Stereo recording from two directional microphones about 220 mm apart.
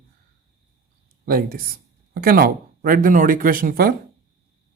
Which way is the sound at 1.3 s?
40° right (ahead or behind).